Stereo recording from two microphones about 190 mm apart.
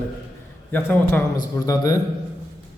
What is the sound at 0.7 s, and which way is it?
A man's voice, 10° left (ahead or behind).